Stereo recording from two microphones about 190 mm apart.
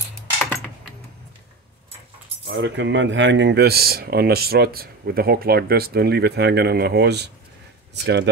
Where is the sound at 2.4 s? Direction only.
70° right (ahead or behind).